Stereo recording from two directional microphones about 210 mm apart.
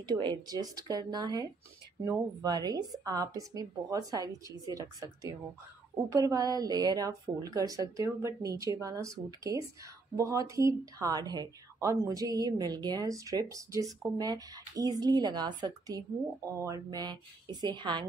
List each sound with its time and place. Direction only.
0.0 s a woman's voice: 20° right (ahead or behind)